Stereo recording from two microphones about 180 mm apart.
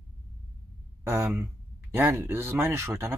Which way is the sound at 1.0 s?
15° right (ahead or behind).